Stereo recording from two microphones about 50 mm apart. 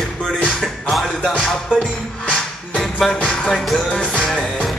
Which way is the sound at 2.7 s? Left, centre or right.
Centre.